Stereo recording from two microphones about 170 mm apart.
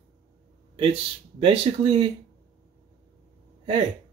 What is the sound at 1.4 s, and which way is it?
Speech, 35° right (ahead or behind).